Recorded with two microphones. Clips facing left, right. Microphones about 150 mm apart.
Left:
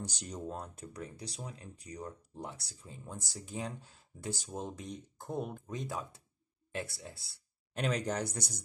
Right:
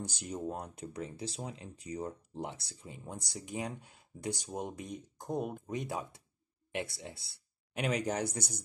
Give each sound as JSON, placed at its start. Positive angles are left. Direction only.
{"t": 0.2, "sound": "speech", "side_deg": -10}
{"t": 0.9, "sound": "speech", "side_deg": -25}
{"t": 7.7, "sound": "speech", "side_deg": -10}